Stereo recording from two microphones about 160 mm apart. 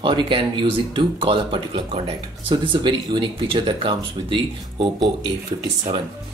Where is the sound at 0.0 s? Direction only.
30° right (ahead or behind).